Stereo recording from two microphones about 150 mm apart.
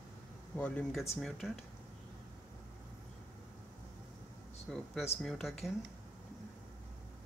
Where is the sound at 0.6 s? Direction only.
10° left (ahead or behind).